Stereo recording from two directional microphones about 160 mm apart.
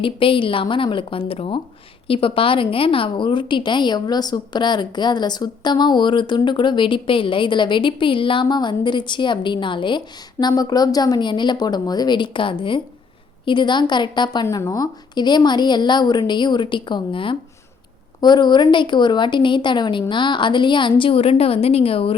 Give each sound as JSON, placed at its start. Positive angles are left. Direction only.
{"t": 0.0, "sound": "a woman's voice", "side_deg": 35}